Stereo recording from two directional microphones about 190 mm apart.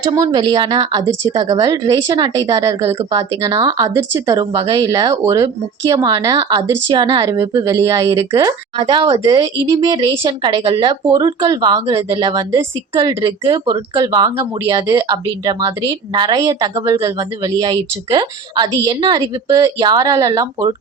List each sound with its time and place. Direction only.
0.1 s speech: 25° right (ahead or behind)